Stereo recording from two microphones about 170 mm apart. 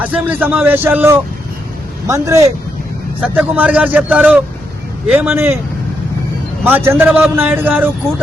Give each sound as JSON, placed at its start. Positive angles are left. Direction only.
{"t": 0.0, "sound": "a man's voice", "side_deg": -10}
{"t": 3.2, "sound": "speech", "side_deg": -10}
{"t": 6.7, "sound": "speech", "side_deg": -15}